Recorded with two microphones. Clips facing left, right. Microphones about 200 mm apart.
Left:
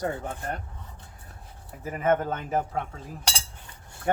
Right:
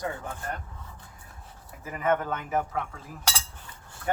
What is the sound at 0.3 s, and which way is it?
Speech, 30° left (ahead or behind).